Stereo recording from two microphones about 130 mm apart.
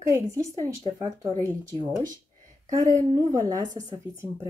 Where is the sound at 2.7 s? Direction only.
25° right (ahead or behind).